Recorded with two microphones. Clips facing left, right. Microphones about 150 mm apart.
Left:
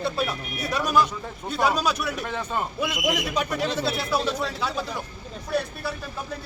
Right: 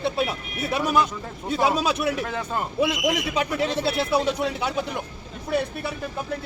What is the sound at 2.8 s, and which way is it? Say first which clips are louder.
Speech: right 5 dB; 25° right (ahead or behind).